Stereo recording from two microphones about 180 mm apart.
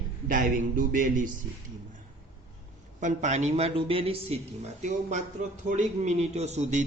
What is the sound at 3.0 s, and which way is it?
A man's voice, 45° right (ahead or behind).